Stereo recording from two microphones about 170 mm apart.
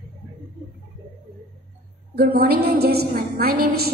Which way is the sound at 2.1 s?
65° right (ahead or behind).